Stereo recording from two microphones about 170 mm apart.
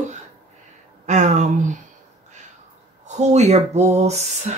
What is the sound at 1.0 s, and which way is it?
Speech, 45° right (ahead or behind).